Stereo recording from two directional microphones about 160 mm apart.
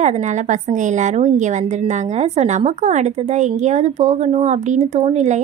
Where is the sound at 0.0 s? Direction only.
45° right (ahead or behind).